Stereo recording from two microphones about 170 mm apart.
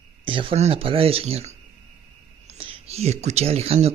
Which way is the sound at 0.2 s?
30° right (ahead or behind).